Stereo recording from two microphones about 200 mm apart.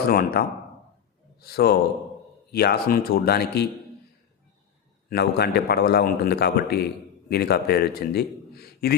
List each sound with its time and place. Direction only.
0.1 s a man's voice: 50° left (ahead or behind)
5.0 s a man's voice: 55° left (ahead or behind)